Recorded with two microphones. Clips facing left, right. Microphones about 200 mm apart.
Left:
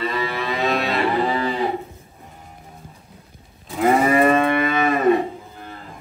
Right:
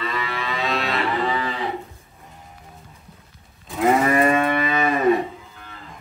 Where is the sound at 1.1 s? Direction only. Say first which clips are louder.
Left 3 dB; 30° left (ahead or behind).